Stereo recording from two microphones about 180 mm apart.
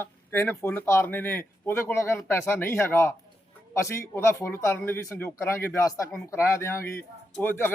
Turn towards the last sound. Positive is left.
turn(degrees=10)  # may be behind; listen again after turning